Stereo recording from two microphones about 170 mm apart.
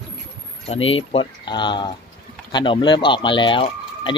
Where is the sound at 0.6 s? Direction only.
35° left (ahead or behind).